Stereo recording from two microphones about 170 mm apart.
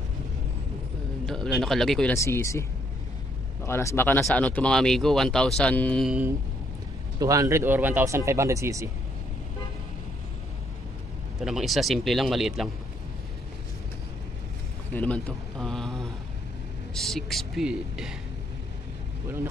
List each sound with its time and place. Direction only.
1.2 s speech: 5° left (ahead or behind)
2.1 s speech: 15° left (ahead or behind)
3.6 s speech: 15° left (ahead or behind)
6.0 s speech: 10° right (ahead or behind)
7.2 s speech: 20° right (ahead or behind)
11.3 s speech: centre (ahead or behind)
14.9 s a man's voice: 10° left (ahead or behind)